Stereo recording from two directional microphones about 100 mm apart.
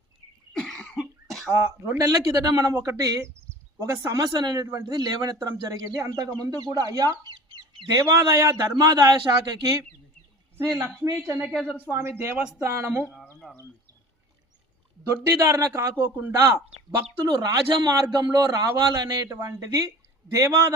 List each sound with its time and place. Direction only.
0.5 s cough: 5° left (ahead or behind)
1.5 s a man's voice: 30° right (ahead or behind)
7.3 s chicken: 50° right (ahead or behind)
7.9 s a man's voice: 35° right (ahead or behind)
11.2 s a man's voice: 25° right (ahead or behind)
11.4 s speech: 5° right (ahead or behind)
11.9 s a man's voice: 30° right (ahead or behind)
13.4 s a sound: 10° right (ahead or behind)
15.1 s a man's voice: 30° right (ahead or behind)
17.2 s a man's voice: 40° right (ahead or behind)